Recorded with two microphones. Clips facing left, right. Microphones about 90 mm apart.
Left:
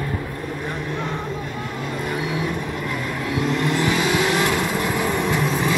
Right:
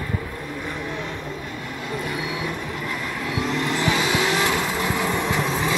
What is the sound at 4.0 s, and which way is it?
Vehicle, 25° right (ahead or behind).